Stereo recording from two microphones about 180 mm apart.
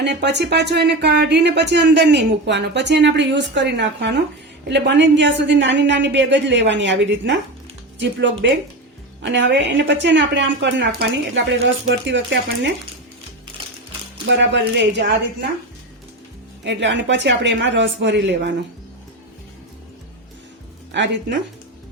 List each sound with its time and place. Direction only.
0.0 s a woman's voice: 70° right (ahead or behind)
14.3 s a woman's voice: 80° right
16.6 s a woman's voice: 80° right
20.9 s speech: 75° right (ahead or behind)